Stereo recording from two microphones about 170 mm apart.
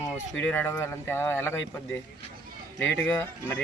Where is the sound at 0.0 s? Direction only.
10° left (ahead or behind).